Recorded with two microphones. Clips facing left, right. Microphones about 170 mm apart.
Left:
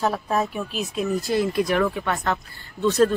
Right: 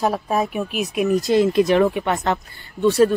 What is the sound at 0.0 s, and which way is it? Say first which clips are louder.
Speech: right 3 dB; 15° right (ahead or behind).